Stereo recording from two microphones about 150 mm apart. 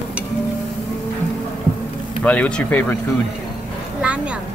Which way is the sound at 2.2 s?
10° left (ahead or behind).